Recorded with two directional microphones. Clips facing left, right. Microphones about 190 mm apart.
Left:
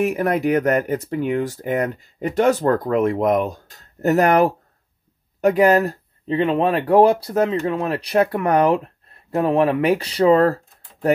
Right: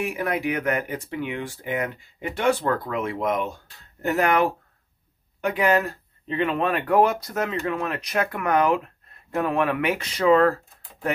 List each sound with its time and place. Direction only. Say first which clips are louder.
0.0 s speech: left 7 dB; 40° left (ahead or behind)